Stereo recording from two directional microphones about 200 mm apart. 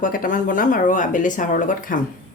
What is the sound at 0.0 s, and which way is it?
Speech, 45° left (ahead or behind).